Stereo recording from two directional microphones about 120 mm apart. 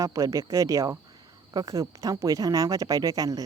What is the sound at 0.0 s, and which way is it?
Speech, 25° right (ahead or behind).